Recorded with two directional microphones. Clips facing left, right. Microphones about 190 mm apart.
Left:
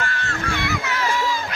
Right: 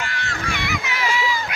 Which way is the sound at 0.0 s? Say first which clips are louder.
Left 2 dB; 15° right (ahead or behind).